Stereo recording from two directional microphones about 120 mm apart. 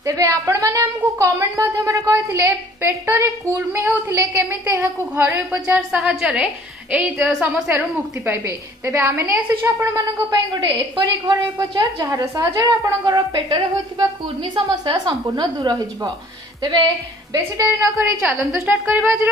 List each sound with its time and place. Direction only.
0.0 s a woman's voice: 25° right (ahead or behind); by 7.7 s 10° right (ahead or behind)
8.3 s a woman's voice: 25° right (ahead or behind)
10.5 s a woman's voice: 35° right (ahead or behind); by 19.1 s 15° right (ahead or behind)